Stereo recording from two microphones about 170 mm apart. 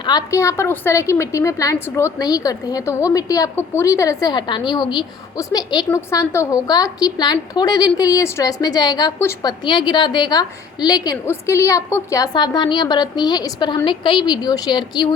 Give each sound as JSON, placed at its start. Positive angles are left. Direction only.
{"t": 0.0, "sound": "a woman's voice", "side_deg": 25}